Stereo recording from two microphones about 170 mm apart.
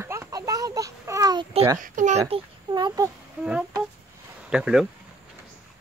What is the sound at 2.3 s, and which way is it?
Speech, 25° right (ahead or behind).